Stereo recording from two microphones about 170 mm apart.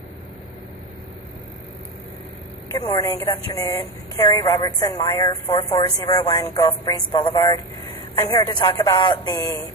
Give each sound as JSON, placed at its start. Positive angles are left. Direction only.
{"t": 2.7, "sound": "a woman's voice", "side_deg": 20}